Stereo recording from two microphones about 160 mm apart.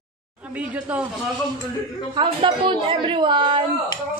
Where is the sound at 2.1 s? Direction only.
30° right (ahead or behind).